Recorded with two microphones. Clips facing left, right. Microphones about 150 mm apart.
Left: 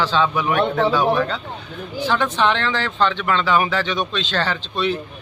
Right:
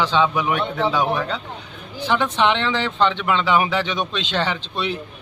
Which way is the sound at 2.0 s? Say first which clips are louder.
Even; 20° right (ahead or behind).